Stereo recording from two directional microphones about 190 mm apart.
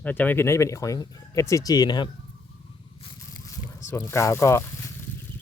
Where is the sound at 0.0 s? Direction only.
10° left (ahead or behind).